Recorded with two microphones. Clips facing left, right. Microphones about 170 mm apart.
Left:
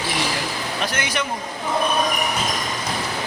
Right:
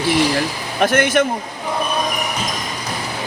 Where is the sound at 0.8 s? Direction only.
55° right (ahead or behind).